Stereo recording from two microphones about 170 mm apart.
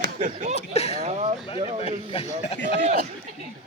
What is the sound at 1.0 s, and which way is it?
Speech, 40° right (ahead or behind).